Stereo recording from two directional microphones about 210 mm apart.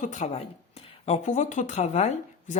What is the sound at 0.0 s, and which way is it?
A woman's voice, 35° left (ahead or behind).